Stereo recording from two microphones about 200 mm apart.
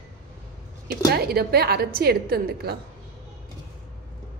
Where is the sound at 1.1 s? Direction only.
50° right (ahead or behind).